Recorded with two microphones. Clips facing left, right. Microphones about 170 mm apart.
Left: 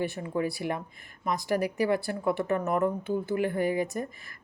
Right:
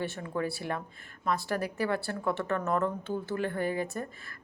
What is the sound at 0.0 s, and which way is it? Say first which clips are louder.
Speech: left 3 dB; 15° left (ahead or behind).